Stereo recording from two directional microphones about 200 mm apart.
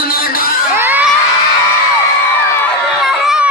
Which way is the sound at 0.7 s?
10° right (ahead or behind).